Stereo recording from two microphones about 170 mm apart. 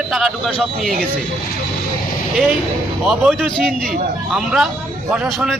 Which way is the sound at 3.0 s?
5° right (ahead or behind).